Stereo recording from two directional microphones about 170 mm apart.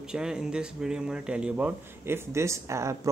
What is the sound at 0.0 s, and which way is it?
Speech, 5° right (ahead or behind).